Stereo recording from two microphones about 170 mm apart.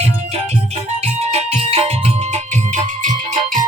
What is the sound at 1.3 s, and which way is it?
Music, 35° right (ahead or behind).